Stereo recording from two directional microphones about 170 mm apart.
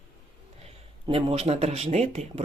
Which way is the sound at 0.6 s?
35° right (ahead or behind).